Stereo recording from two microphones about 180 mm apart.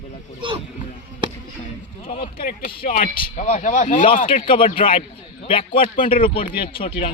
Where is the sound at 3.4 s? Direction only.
45° left (ahead or behind).